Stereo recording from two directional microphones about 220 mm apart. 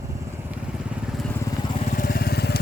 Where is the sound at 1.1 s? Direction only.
5° left (ahead or behind).